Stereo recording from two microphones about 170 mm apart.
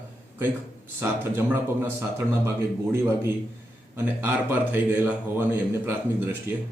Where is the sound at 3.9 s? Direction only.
15° right (ahead or behind).